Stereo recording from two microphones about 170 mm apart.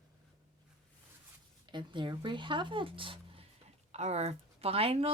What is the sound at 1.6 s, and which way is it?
Speech, 25° right (ahead or behind).